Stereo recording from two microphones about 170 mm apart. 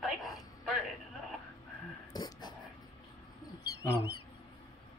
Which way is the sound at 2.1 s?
25° left (ahead or behind).